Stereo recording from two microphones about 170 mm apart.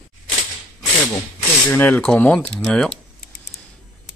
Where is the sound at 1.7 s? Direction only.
10° left (ahead or behind).